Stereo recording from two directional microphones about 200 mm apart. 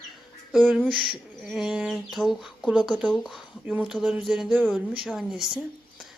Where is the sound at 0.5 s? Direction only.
Centre (ahead or behind).